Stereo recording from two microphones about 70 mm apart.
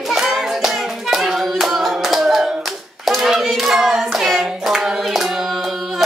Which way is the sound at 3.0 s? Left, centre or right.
Centre.